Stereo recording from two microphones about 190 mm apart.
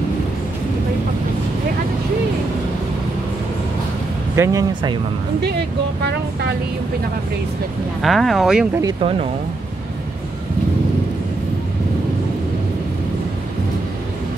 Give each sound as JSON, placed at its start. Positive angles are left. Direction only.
{"t": 4.4, "sound": "speech", "side_deg": -20}
{"t": 8.0, "sound": "speech", "side_deg": 0}